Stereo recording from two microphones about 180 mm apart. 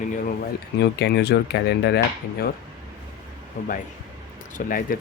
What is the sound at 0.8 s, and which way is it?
Speech, 70° left (ahead or behind).